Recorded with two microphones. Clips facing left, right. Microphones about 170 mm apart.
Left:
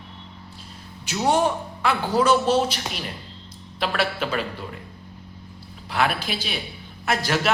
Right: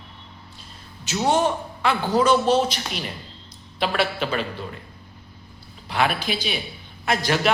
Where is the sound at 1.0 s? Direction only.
10° left (ahead or behind).